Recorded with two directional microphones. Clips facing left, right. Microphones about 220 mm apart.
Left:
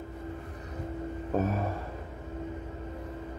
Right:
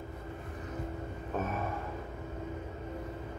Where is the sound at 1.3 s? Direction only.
35° left (ahead or behind).